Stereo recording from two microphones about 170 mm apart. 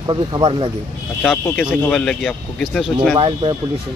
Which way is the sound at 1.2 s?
5° left (ahead or behind).